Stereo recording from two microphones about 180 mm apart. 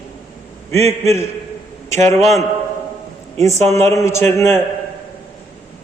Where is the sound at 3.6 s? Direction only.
40° right (ahead or behind).